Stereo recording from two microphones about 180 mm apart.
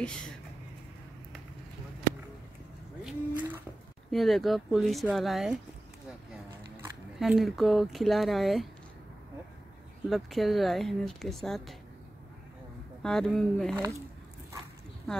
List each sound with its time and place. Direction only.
0.0 s a woman's voice: 5° left (ahead or behind)
3.0 s a sound: 5° right (ahead or behind)
4.1 s a woman's voice: centre (ahead or behind)
7.2 s a woman's voice: centre (ahead or behind)
10.0 s a woman's voice: centre (ahead or behind)
13.0 s a woman's voice: centre (ahead or behind)
13.7 s speech: 15° right (ahead or behind)